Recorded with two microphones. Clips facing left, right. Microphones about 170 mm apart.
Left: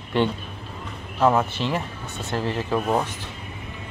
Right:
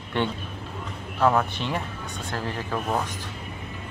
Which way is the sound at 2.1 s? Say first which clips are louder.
Left 6 dB; 25° left (ahead or behind).